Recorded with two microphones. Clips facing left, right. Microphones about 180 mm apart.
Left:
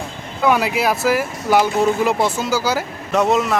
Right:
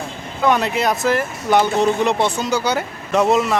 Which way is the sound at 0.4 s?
5° left (ahead or behind).